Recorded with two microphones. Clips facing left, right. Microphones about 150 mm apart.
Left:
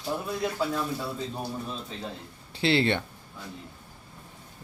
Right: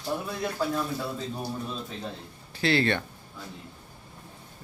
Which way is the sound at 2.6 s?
25° left (ahead or behind).